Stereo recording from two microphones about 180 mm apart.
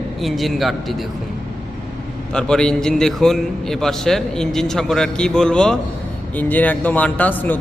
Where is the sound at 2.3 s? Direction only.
5° left (ahead or behind).